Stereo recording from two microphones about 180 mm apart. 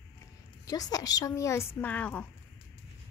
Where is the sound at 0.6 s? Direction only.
20° left (ahead or behind).